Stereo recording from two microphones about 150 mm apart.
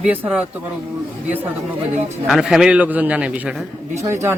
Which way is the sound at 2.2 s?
5° right (ahead or behind).